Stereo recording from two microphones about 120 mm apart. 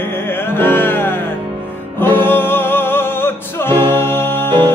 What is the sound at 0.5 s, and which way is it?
Music, 20° left (ahead or behind).